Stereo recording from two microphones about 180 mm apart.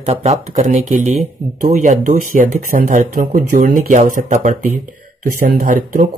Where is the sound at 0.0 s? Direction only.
35° right (ahead or behind).